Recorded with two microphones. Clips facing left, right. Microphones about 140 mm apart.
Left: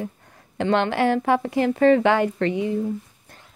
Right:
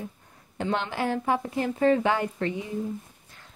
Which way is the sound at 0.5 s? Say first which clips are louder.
Left 8 dB; 75° left (ahead or behind).